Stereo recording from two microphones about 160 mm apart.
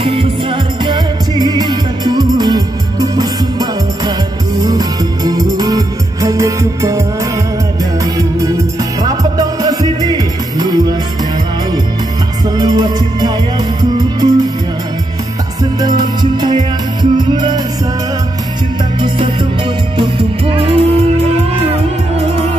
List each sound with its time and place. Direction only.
0.0 s music: 35° right (ahead or behind)
12.5 s music: 25° right (ahead or behind)
15.8 s music: 25° right (ahead or behind)
18.9 s music: 30° right (ahead or behind)